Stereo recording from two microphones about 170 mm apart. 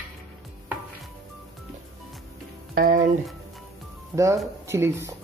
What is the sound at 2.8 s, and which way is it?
Music, 55° right (ahead or behind).